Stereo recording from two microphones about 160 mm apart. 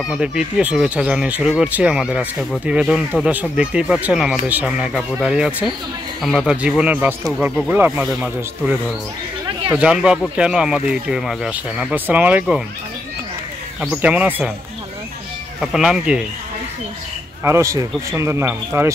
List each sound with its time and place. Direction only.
0.0 s speech: 5° right (ahead or behind)
13.7 s speech: 10° right (ahead or behind)
15.6 s speech: 5° right (ahead or behind)
17.4 s speech: 15° right (ahead or behind)